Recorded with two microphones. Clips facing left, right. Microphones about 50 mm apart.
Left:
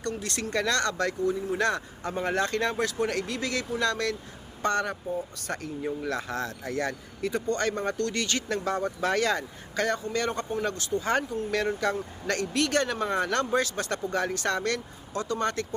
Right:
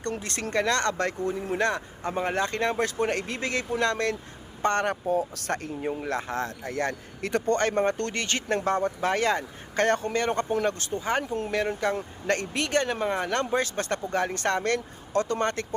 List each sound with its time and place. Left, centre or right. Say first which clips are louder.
0.0 s speech: right 1 dB; right
1.5 s speech: right 1 dB; right
4.9 s speech: right 6 dB; right
5.5 s a man's voice: right 4 dB; right
6.0 s speech: right 1 dB; right
7.2 s speech: right 2 dB; right
7.5 s speech: right 7 dB; right
9.8 s a man's voice: right 4 dB; right
10.2 s speech: right 3 dB; right
11.0 s speech: right 2 dB; centre
13.6 s speech: right 1 dB; right